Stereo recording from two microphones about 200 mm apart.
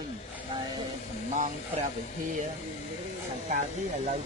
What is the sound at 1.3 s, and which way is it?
Speech, 35° right (ahead or behind).